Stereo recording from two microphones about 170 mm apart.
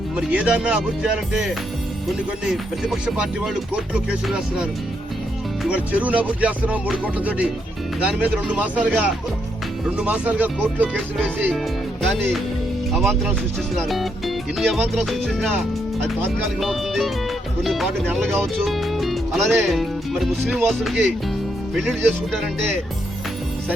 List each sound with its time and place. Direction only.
0.2 s music: 5° right (ahead or behind)
13.0 s music: centre (ahead or behind)
16.6 s music: centre (ahead or behind)
19.6 s speech: centre (ahead or behind)
20.7 s music: centre (ahead or behind)